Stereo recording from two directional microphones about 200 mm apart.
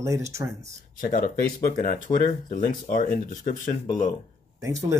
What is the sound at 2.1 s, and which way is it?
Speech, 40° left (ahead or behind).